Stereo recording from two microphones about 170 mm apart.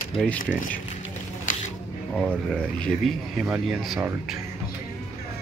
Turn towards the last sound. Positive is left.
turn(degrees=0)  # may be behind; listen again after turning